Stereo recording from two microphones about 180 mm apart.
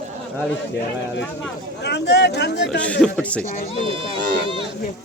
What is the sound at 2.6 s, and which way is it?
Speech, 5° left (ahead or behind).